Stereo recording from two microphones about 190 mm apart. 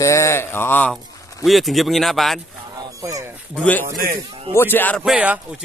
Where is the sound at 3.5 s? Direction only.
5° left (ahead or behind).